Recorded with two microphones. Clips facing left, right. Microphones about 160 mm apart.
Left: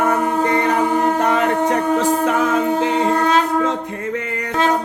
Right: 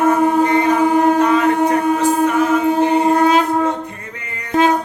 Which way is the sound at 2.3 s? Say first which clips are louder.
Right 2 dB; 90° left.